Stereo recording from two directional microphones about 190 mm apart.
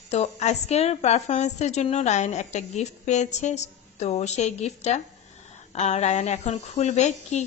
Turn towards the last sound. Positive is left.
turn(degrees=35)  # may be behind; listen again after turning